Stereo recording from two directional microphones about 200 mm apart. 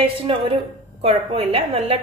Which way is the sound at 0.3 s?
25° right (ahead or behind).